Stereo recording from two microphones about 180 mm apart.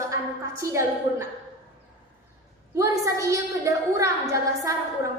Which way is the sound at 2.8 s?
15° right (ahead or behind).